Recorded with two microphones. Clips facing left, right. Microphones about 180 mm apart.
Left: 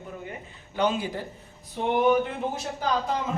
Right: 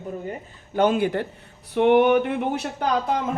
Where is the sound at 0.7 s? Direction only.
55° right (ahead or behind).